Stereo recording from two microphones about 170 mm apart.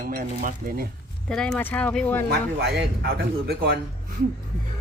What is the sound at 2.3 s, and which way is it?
Speech, 75° right (ahead or behind).